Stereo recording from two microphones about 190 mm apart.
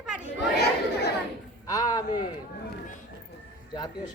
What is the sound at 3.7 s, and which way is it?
Speech, 20° left (ahead or behind).